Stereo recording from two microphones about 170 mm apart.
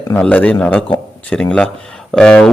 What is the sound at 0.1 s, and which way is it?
A man's voice, 10° left (ahead or behind).